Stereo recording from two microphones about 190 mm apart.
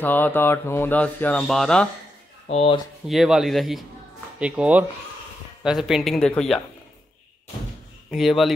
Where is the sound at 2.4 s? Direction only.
30° left (ahead or behind).